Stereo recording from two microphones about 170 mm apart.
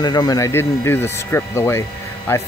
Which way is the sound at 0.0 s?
25° left (ahead or behind).